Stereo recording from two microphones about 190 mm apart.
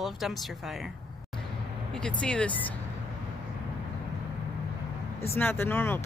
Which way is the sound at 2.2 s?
5° left (ahead or behind).